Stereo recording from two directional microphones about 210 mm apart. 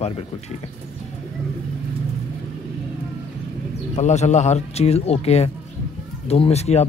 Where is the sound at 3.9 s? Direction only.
35° left (ahead or behind).